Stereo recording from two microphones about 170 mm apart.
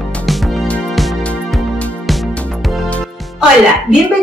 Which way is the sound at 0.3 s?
Centre (ahead or behind).